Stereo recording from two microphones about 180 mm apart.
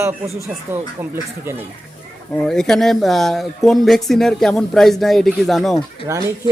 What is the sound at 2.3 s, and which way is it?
Speech, 5° left (ahead or behind).